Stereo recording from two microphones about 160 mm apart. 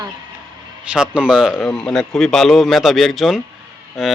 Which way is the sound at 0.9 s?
5° right (ahead or behind).